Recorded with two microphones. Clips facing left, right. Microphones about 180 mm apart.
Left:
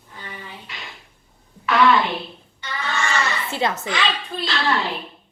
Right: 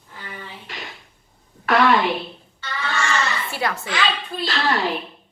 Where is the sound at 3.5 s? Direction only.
20° left (ahead or behind).